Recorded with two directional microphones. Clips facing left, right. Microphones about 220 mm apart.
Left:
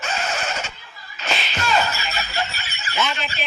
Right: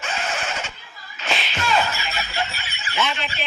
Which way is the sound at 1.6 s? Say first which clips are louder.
Even; 40° left (ahead or behind).